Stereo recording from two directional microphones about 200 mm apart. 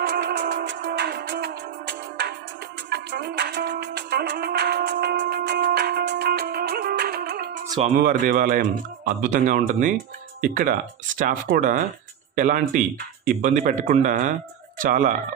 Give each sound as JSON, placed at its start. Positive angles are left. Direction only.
{"t": 0.0, "sound": "music", "side_deg": -55}
{"t": 8.0, "sound": "speech", "side_deg": -45}